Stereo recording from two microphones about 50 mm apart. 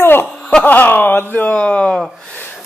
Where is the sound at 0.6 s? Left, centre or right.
Left.